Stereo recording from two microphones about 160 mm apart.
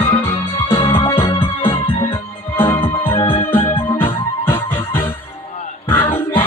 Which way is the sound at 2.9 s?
35° left (ahead or behind).